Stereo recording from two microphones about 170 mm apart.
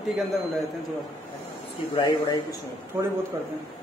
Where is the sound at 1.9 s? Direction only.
25° left (ahead or behind).